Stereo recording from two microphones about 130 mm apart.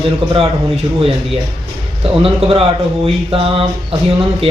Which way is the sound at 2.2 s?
45° right (ahead or behind).